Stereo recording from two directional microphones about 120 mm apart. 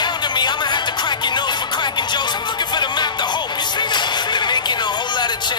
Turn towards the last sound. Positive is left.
turn(degrees=40)  # may be behind; listen again after turning